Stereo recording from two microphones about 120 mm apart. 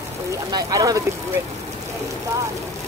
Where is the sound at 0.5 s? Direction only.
30° right (ahead or behind).